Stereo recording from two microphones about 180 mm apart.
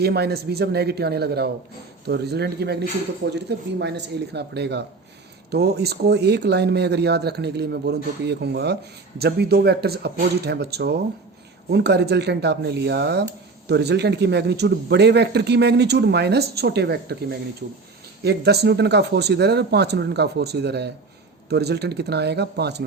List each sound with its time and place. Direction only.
0.0 s speech: 65° right (ahead or behind)